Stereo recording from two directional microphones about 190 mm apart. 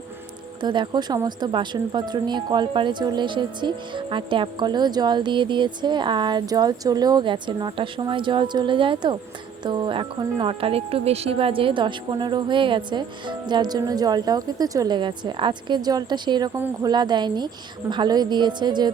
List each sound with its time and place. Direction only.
0.6 s speech: 25° right (ahead or behind)